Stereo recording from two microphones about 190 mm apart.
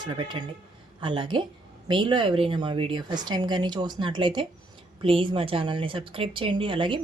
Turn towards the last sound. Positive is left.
turn(degrees=-25)  # may be behind; listen again after turning